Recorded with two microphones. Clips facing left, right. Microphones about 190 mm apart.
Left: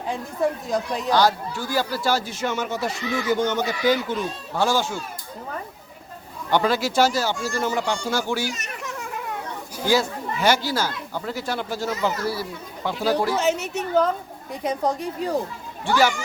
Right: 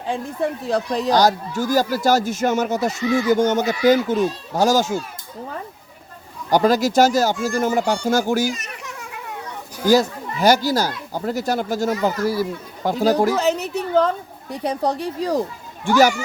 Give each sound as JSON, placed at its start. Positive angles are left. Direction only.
{"t": 0.9, "sound": "speech", "side_deg": -40}
{"t": 6.5, "sound": "speech", "side_deg": -40}
{"t": 9.8, "sound": "speech", "side_deg": -40}